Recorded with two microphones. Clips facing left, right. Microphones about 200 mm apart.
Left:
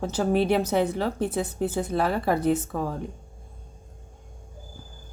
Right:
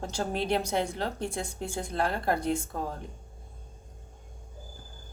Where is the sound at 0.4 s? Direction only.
5° left (ahead or behind).